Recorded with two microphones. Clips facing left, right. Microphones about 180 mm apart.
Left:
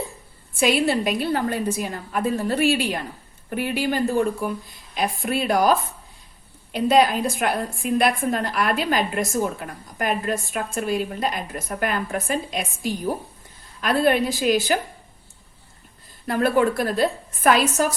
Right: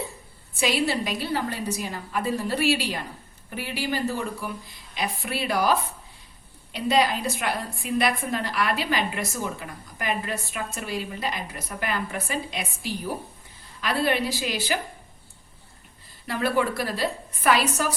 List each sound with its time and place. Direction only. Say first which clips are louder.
0.6 s a woman's voice: left 5 dB; 55° left (ahead or behind)
6.7 s a woman's voice: left 5 dB; 55° left (ahead or behind)
16.2 s a woman's voice: left 5 dB; 50° left (ahead or behind)